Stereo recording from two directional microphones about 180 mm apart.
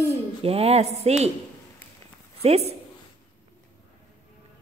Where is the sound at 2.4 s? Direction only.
35° right (ahead or behind).